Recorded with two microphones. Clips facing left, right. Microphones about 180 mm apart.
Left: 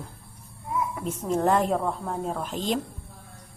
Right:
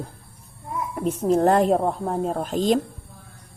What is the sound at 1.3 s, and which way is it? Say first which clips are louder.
Speech: right 5 dB; 35° right (ahead or behind).